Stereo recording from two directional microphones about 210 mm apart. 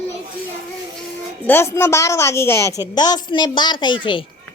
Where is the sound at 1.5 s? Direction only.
10° left (ahead or behind).